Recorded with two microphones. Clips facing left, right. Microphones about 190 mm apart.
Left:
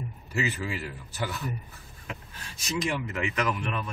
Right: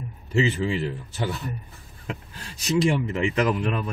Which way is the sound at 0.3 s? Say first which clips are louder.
Right 8 dB; 25° right (ahead or behind).